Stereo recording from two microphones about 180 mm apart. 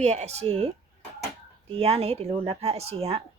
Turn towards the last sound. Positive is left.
turn(degrees=-35)  # may be behind; listen again after turning